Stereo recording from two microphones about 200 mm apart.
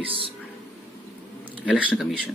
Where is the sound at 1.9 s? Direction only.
Centre (ahead or behind).